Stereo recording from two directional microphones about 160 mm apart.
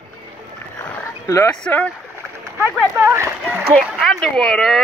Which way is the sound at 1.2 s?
20° left (ahead or behind).